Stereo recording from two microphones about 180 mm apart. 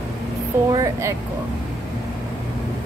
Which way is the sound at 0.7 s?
20° right (ahead or behind).